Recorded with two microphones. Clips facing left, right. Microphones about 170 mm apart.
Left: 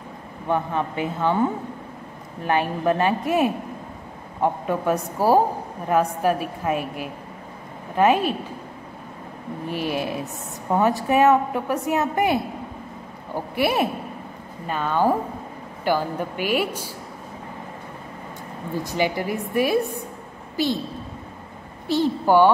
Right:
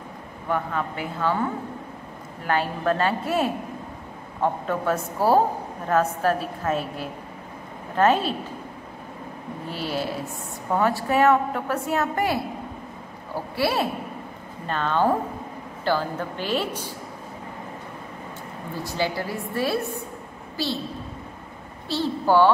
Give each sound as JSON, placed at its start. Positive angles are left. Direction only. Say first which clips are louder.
{"t": 0.5, "sound": "a woman's voice", "louder": "left 3 dB", "side_deg": 20}
{"t": 9.7, "sound": "a woman's voice", "louder": "left 3 dB", "side_deg": 15}
{"t": 18.9, "sound": "a woman's voice", "louder": "left 3 dB", "side_deg": 15}
{"t": 21.8, "sound": "a woman's voice", "louder": "left 3 dB", "side_deg": 15}